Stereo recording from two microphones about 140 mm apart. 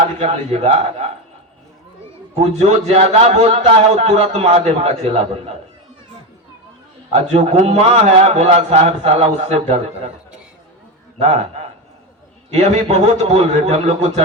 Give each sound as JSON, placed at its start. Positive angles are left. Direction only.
{"t": 0.2, "sound": "a man's voice", "side_deg": -50}
{"t": 2.4, "sound": "a man's voice", "side_deg": -50}
{"t": 7.1, "sound": "a man's voice", "side_deg": -55}
{"t": 11.2, "sound": "a man's voice", "side_deg": -50}